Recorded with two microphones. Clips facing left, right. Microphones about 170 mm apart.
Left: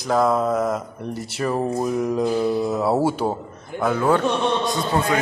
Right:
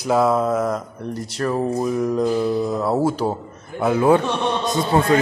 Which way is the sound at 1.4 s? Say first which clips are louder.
Right 1 dB; 5° left (ahead or behind).